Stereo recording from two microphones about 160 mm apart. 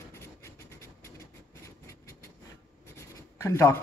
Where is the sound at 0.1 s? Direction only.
15° left (ahead or behind).